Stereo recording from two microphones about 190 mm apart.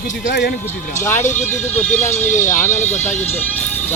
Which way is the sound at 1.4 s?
10° left (ahead or behind).